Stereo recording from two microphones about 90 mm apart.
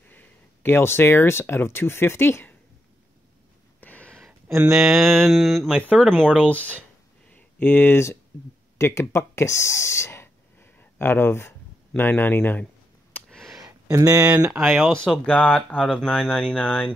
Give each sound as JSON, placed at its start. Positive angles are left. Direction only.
{"t": 0.1, "sound": "speech", "side_deg": 20}
{"t": 3.8, "sound": "a sound", "side_deg": 15}
{"t": 4.6, "sound": "mantra", "side_deg": -5}
{"t": 5.9, "sound": "speech", "side_deg": 10}
{"t": 7.2, "sound": "a sound", "side_deg": 20}
{"t": 8.7, "sound": "speech", "side_deg": 30}
{"t": 13.1, "sound": "a sound", "side_deg": 5}
{"t": 13.9, "sound": "speech", "side_deg": -40}
{"t": 14.2, "sound": "speech", "side_deg": -10}
{"t": 14.9, "sound": "speech", "side_deg": 10}